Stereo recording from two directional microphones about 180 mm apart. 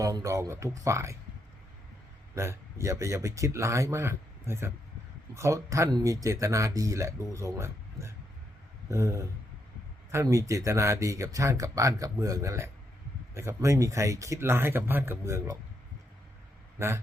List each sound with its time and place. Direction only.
0.0 s speech: 20° right (ahead or behind)
2.3 s speech: 15° right (ahead or behind)
16.7 s speech: 15° right (ahead or behind)